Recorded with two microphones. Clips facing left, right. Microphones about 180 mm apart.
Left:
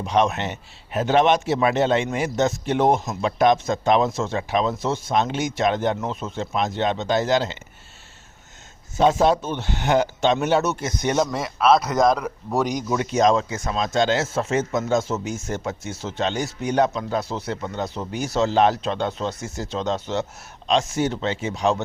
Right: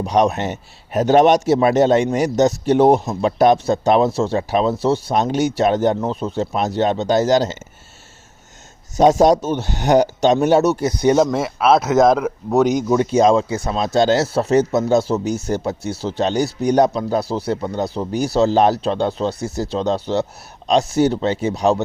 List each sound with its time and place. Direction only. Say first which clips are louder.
0.0 s a man's voice: right 4 dB; 40° right (ahead or behind)
9.0 s a man's voice: right 5 dB; 40° right (ahead or behind)
11.7 s speech: right 5 dB; 5° right (ahead or behind)
12.7 s a man's voice: right 7 dB; 30° right (ahead or behind)